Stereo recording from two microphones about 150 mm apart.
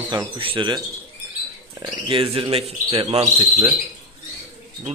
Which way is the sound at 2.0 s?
40° right (ahead or behind).